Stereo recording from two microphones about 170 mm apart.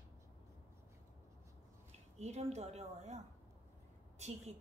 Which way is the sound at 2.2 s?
40° right (ahead or behind).